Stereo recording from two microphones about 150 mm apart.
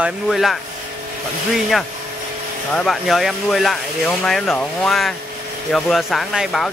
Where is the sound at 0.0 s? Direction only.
Centre (ahead or behind).